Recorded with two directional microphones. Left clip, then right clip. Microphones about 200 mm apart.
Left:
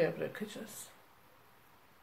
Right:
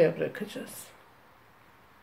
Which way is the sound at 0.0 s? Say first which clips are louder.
Right 8 dB; 25° right (ahead or behind).